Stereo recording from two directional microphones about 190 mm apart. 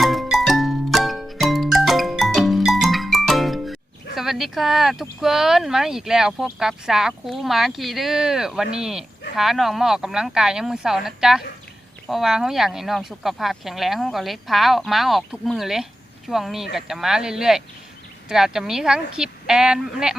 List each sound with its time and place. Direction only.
0.0 s music: centre (ahead or behind)
5.2 s speech: centre (ahead or behind)